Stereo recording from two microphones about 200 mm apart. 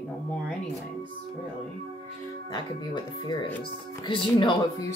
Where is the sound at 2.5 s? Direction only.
20° left (ahead or behind).